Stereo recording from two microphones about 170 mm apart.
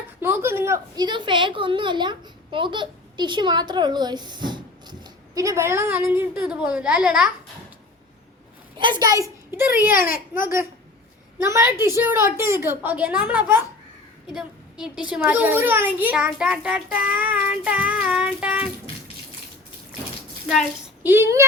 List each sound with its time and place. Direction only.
0.2 s a woman's voice: 15° right (ahead or behind)
8.8 s a woman's voice: 25° right (ahead or behind)
11.3 s a child's voice: 15° right (ahead or behind)
20.5 s speech: centre (ahead or behind)